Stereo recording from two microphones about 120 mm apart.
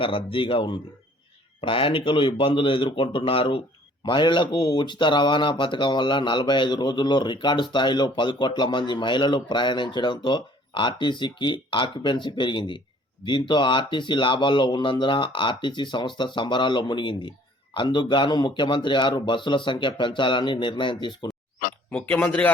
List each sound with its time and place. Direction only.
0.0 s speech: 45° left (ahead or behind)
21.8 s speech: 10° left (ahead or behind)